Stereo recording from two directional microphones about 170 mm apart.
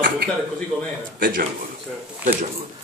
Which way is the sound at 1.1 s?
55° right (ahead or behind).